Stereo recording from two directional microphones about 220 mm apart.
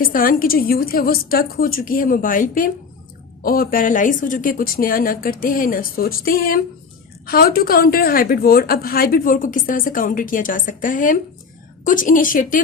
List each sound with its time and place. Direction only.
0.0 s a woman's voice: 40° left (ahead or behind)